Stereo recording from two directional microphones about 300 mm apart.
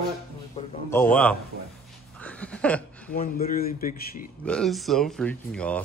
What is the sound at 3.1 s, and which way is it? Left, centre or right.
A man's voice, left.